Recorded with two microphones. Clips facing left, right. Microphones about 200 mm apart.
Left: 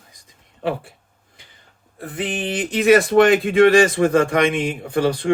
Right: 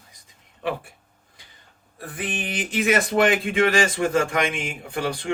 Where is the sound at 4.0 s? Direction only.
35° left (ahead or behind).